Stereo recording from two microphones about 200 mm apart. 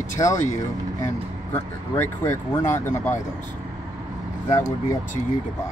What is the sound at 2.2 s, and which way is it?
Speech, 15° left (ahead or behind).